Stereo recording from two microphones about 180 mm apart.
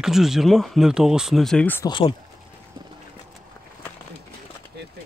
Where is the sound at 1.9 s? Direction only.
25° left (ahead or behind).